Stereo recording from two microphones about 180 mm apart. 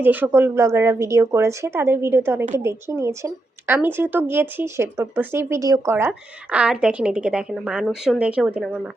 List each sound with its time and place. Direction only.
0.0 s speech: 10° right (ahead or behind)